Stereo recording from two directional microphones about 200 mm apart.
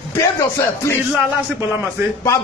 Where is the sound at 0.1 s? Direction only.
15° left (ahead or behind).